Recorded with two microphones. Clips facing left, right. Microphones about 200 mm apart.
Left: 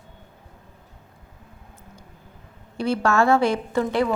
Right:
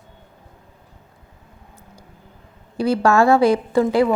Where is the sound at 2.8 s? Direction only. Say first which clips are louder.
Right 4 dB; 35° right (ahead or behind).